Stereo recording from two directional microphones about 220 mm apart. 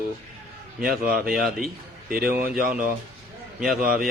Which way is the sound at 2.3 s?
40° right (ahead or behind).